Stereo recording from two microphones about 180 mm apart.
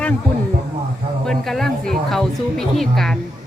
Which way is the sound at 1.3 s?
Centre (ahead or behind).